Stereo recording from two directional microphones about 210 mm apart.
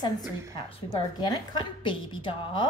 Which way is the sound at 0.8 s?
20° left (ahead or behind).